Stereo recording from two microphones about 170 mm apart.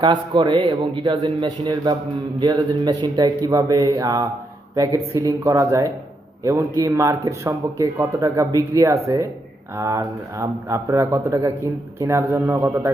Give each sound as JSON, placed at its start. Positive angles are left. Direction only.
{"t": 0.0, "sound": "a man's voice", "side_deg": -30}